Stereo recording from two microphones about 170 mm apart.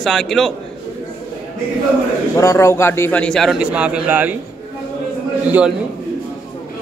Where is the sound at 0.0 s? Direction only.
Centre (ahead or behind).